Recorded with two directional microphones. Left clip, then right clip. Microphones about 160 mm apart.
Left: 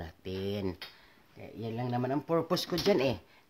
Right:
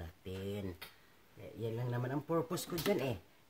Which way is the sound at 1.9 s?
50° left (ahead or behind).